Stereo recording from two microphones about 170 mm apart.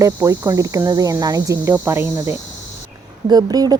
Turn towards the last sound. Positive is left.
turn(degrees=-25)  # may be behind; listen again after turning